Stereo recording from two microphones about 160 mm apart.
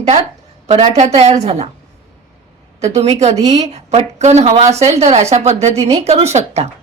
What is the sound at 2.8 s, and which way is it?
A woman's voice, 40° right (ahead or behind).